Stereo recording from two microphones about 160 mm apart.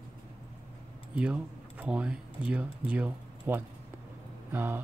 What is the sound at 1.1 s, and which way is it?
Speech, 10° right (ahead or behind).